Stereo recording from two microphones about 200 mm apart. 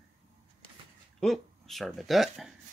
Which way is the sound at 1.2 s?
Centre (ahead or behind).